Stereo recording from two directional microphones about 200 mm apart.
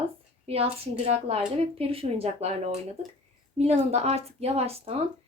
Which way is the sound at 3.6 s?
30° right (ahead or behind).